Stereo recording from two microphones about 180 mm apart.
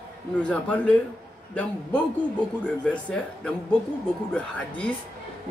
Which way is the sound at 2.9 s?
5° left (ahead or behind).